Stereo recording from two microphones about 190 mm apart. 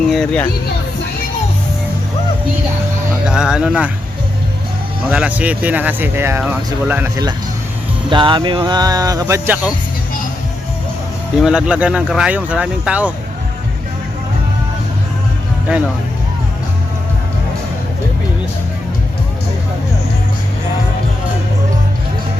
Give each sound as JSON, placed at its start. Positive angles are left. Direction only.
{"t": 0.1, "sound": "speech", "side_deg": 0}
{"t": 3.2, "sound": "speech", "side_deg": -5}
{"t": 5.0, "sound": "speech", "side_deg": -5}
{"t": 8.1, "sound": "speech", "side_deg": -25}
{"t": 11.3, "sound": "speech", "side_deg": -5}